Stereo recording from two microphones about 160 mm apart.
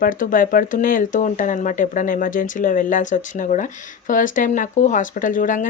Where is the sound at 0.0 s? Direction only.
55° left (ahead or behind).